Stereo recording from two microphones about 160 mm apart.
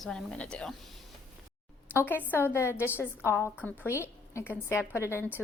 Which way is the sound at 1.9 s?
15° left (ahead or behind).